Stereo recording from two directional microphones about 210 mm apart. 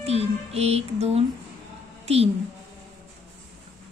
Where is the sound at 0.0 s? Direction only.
30° right (ahead or behind).